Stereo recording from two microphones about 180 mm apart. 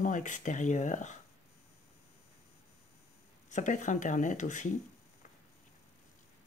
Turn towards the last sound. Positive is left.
turn(degrees=45)  # may be behind; listen again after turning